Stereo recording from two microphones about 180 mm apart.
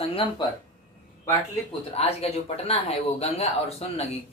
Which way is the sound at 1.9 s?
35° left (ahead or behind).